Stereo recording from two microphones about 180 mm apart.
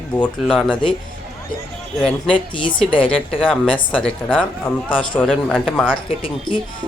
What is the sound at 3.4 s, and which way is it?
Speech, 5° left (ahead or behind).